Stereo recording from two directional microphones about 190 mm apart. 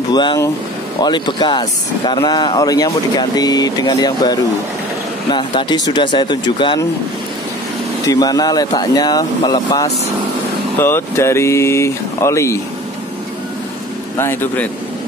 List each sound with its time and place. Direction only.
0.1 s speech: 25° left (ahead or behind)
8.1 s speech: 20° left (ahead or behind)
14.1 s speech: 10° left (ahead or behind)